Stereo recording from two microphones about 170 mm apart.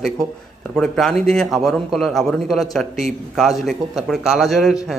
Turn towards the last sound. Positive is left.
turn(degrees=0)  # may be behind; listen again after turning